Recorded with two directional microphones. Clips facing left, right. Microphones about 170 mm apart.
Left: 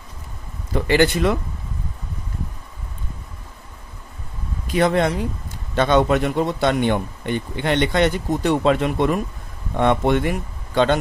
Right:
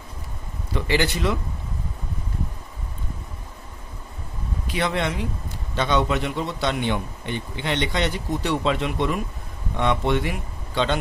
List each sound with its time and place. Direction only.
0.7 s speech: 50° left (ahead or behind)
4.6 s speech: 45° left (ahead or behind)